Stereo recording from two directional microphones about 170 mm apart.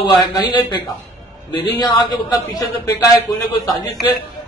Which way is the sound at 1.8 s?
25° left (ahead or behind).